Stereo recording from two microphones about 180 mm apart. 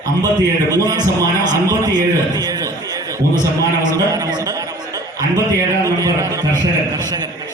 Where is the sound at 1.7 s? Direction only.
20° right (ahead or behind).